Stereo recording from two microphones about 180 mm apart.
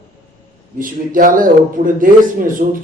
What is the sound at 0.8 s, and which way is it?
A man's voice, 50° right (ahead or behind).